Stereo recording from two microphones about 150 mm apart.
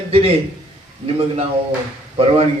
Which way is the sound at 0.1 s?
40° right (ahead or behind).